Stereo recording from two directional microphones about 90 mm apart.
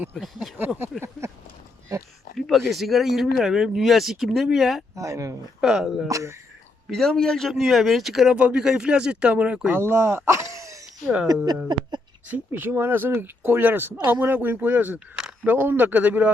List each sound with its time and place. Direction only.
2.5 s speech: centre (ahead or behind)
4.9 s speech: 35° right (ahead or behind)
5.5 s speech: 5° right (ahead or behind)
6.1 s speech: 35° right (ahead or behind)
6.9 s speech: 5° left (ahead or behind); by 9.7 s 10° right (ahead or behind)
9.7 s speech: 30° right (ahead or behind); by 11.9 s 50° right (ahead or behind)
12.3 s speech: 20° right (ahead or behind)
14.9 s speech: 10° right (ahead or behind)
15.4 s speech: 20° right (ahead or behind)